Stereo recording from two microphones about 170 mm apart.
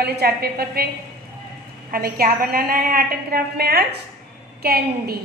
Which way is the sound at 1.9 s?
60° right (ahead or behind).